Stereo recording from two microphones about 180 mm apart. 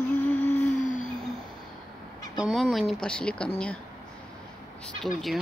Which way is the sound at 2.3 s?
Centre (ahead or behind).